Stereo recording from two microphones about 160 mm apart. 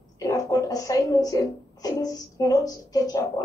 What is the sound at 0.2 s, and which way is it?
A woman's voice, 20° left (ahead or behind).